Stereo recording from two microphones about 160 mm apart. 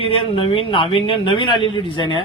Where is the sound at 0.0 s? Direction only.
35° left (ahead or behind).